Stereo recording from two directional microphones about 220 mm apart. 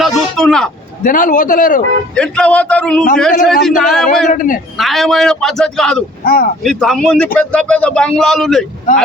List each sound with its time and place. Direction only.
0.0 s vehicle: centre (ahead or behind)
1.0 s a man's voice: 40° left (ahead or behind)
2.1 s speech: 5° left (ahead or behind)
4.3 s a man's voice: 35° left (ahead or behind)
4.8 s speech: centre (ahead or behind)
6.2 s speech: 40° left (ahead or behind)
6.6 s speech: centre (ahead or behind)
8.9 s a man's voice: 35° left (ahead or behind)